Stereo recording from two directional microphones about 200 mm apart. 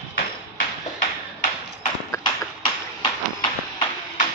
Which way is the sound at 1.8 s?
20° left (ahead or behind).